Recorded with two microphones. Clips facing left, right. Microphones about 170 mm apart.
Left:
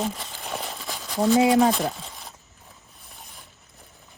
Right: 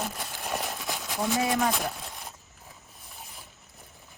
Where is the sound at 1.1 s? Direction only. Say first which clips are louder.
Left 9 dB; 20° left (ahead or behind).